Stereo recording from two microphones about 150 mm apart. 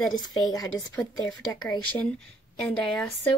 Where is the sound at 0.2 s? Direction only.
25° left (ahead or behind).